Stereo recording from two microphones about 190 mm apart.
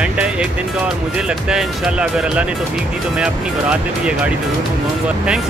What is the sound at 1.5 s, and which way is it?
Speech, 5° right (ahead or behind).